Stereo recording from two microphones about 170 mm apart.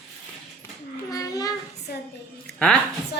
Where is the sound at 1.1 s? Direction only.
20° left (ahead or behind).